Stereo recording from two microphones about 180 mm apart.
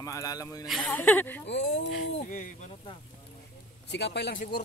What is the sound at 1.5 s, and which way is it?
Speech, 80° left.